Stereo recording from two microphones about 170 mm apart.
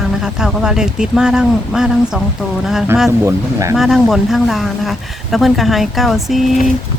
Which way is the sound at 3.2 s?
15° right (ahead or behind).